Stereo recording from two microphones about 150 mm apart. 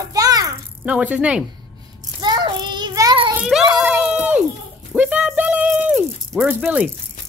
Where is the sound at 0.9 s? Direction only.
10° right (ahead or behind).